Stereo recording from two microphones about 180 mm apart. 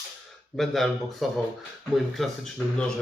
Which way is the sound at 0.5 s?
Centre (ahead or behind).